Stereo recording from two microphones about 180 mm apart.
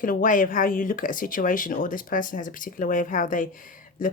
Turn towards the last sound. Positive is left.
turn(degrees=50)  # may be behind; listen again after turning